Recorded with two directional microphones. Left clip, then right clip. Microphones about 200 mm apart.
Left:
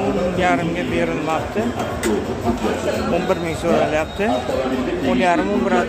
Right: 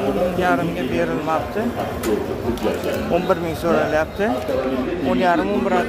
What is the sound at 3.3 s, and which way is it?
Speech, 5° right (ahead or behind).